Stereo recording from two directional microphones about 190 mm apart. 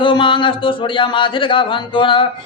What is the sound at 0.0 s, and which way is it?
Speech, 25° left (ahead or behind).